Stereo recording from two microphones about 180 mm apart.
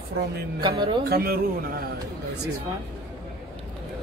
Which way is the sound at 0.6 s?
25° right (ahead or behind).